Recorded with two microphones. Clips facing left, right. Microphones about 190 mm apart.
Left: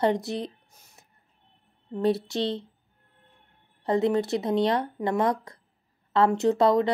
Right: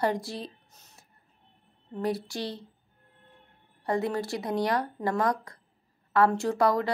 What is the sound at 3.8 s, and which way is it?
A woman's voice, 20° left (ahead or behind).